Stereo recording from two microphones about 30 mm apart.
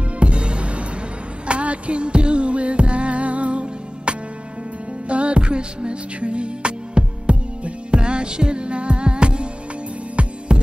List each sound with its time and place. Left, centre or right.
0.2 s music: right
10.2 s music: right